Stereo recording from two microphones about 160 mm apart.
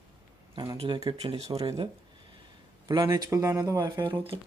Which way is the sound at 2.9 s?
25° right (ahead or behind).